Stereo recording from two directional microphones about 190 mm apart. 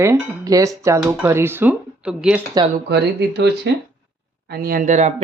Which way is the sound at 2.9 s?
60° right (ahead or behind).